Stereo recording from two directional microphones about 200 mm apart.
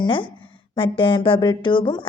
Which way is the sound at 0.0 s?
25° left (ahead or behind).